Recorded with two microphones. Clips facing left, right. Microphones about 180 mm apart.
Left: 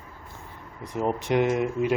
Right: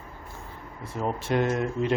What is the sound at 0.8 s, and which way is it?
Speech, 20° left (ahead or behind).